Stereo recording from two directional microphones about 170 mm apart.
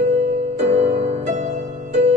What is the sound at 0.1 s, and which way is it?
Music, 40° right (ahead or behind).